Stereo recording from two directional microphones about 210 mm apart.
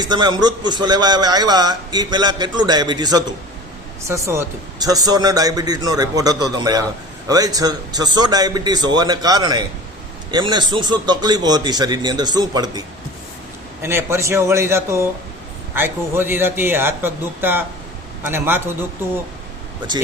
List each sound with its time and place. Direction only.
0.0 s a man's voice: 20° right (ahead or behind)
13.8 s a man's voice: 10° right (ahead or behind)